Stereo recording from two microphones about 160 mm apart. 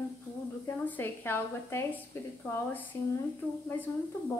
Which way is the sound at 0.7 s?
10° left (ahead or behind).